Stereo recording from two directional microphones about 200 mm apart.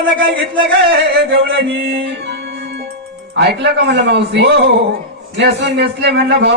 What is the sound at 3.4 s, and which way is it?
Speech, 60° right (ahead or behind).